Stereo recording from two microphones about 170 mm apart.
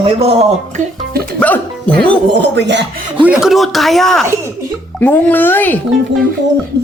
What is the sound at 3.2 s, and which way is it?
Speech, 5° right (ahead or behind).